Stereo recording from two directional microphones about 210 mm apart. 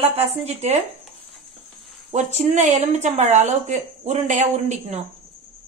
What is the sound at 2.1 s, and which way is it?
A woman's voice, 35° right (ahead or behind).